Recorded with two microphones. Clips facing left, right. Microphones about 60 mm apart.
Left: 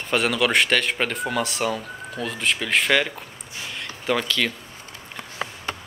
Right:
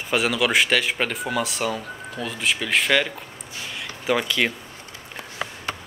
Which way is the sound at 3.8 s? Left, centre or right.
Centre.